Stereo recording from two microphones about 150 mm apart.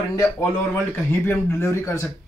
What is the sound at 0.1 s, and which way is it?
Speech, 15° left (ahead or behind).